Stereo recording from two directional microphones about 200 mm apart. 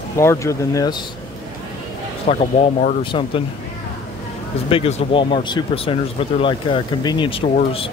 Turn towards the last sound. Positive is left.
turn(degrees=30)  # may be behind; listen again after turning